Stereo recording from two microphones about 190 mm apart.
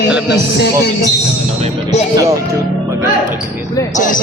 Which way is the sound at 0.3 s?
60° left (ahead or behind).